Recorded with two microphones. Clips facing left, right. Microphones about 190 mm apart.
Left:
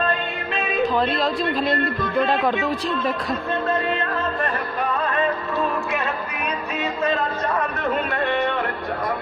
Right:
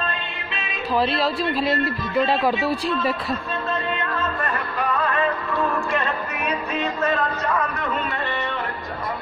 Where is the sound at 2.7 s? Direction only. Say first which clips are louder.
Right 1 dB; 10° right (ahead or behind).